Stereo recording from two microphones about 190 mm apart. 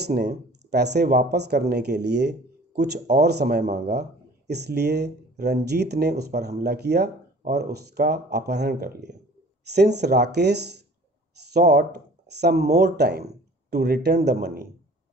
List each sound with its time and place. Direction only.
0.1 s speech: 60° right (ahead or behind)